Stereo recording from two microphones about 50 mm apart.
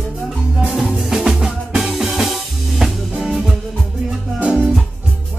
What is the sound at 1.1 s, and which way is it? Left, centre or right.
Music, centre.